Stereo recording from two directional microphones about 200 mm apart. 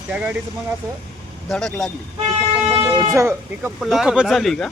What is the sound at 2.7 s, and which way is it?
Speech, 25° right (ahead or behind).